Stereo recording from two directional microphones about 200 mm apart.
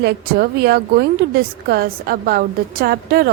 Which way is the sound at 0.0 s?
55° right (ahead or behind).